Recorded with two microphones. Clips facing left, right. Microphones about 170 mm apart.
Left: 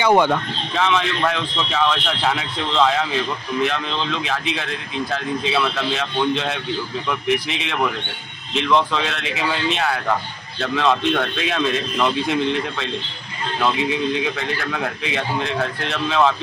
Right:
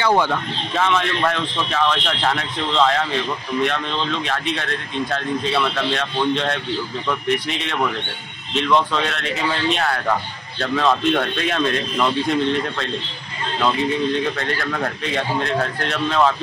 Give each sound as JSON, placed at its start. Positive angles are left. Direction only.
{"t": 0.0, "sound": "speech", "side_deg": 15}
{"t": 0.7, "sound": "speech", "side_deg": 0}